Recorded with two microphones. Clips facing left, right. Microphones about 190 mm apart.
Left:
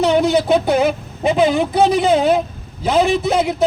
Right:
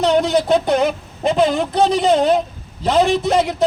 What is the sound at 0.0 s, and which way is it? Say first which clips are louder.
A man's voice: left 1 dB; 5° left (ahead or behind).